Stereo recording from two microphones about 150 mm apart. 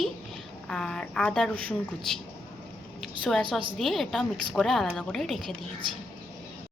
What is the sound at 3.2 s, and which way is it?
A woman's voice, 5° left (ahead or behind).